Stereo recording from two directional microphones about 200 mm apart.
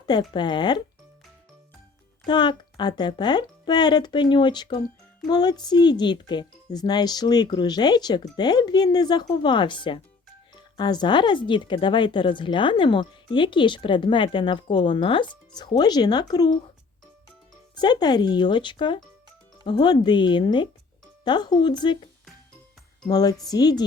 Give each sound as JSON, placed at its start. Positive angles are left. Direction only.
{"t": 0.0, "sound": "speech", "side_deg": 20}
{"t": 2.2, "sound": "speech", "side_deg": 20}
{"t": 17.7, "sound": "speech", "side_deg": 20}
{"t": 23.0, "sound": "speech", "side_deg": 20}